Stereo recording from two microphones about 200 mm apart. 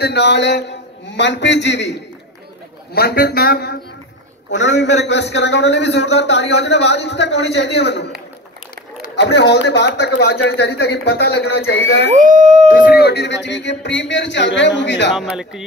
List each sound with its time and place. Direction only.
0.0 s a man's voice: 55° left (ahead or behind)
2.9 s a man's voice: 50° left (ahead or behind)
4.6 s a man's voice: 60° left (ahead or behind)
9.1 s a man's voice: 60° left (ahead or behind)
12.1 s speech: 40° right (ahead or behind)
12.9 s a man's voice: 55° left (ahead or behind)
15.1 s speech: 5° right (ahead or behind)